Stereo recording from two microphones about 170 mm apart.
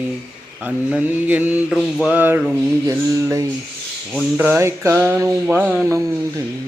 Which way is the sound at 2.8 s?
20° right (ahead or behind).